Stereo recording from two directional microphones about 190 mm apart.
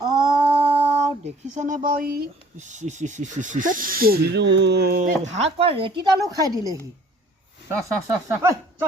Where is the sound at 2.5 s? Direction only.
40° right (ahead or behind).